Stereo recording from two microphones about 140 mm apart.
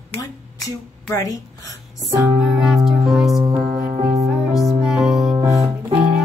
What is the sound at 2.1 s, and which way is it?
Music, 25° right (ahead or behind).